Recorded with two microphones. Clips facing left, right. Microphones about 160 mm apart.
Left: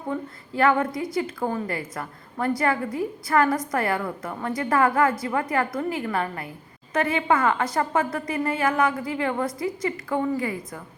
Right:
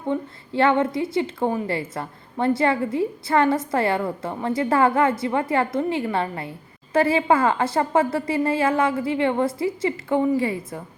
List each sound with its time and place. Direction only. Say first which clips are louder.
0.1 s a woman's voice: right 4 dB; 25° right (ahead or behind)